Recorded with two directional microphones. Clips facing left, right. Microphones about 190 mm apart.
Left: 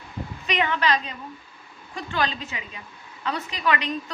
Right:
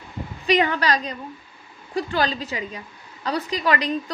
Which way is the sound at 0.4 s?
35° right (ahead or behind).